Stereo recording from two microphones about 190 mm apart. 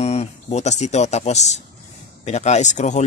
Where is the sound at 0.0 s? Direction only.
35° left (ahead or behind).